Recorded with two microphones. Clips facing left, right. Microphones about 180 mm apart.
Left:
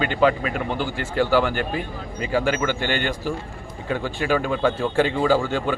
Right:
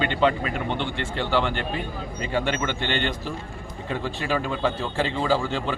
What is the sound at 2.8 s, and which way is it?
Speech, 10° left (ahead or behind).